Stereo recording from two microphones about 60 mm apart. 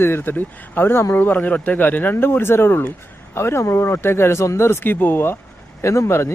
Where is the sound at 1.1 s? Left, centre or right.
Left.